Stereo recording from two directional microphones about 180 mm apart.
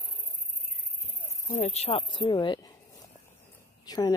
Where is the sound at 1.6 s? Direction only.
35° left (ahead or behind).